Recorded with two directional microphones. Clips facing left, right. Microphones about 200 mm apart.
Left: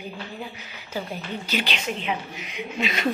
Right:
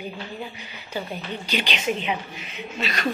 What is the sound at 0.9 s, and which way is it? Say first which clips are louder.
A woman's voice: even; 5° left (ahead or behind).